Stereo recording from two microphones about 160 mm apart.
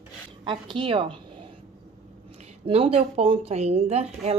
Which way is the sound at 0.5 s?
30° right (ahead or behind).